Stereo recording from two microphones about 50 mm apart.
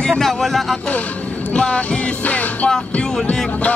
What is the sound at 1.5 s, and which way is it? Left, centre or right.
Music, left.